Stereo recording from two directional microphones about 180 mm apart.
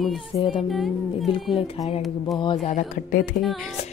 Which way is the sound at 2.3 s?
25° left (ahead or behind).